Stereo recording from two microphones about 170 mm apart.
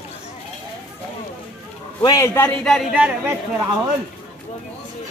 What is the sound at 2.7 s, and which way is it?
Speech, centre (ahead or behind).